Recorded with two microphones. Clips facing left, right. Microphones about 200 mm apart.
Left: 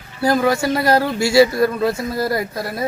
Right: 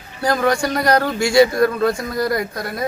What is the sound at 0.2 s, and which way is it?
Speech, 5° left (ahead or behind).